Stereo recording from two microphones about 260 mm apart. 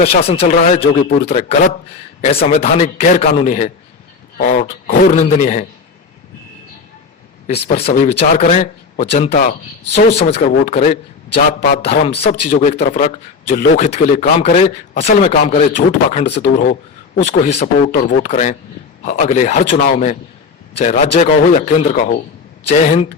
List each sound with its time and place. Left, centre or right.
0.0 s a man's voice: left
7.4 s a man's voice: left
16.4 s speech: left
17.2 s a man's voice: left